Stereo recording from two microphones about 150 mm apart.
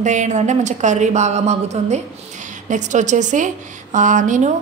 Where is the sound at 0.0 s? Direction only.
55° right (ahead or behind).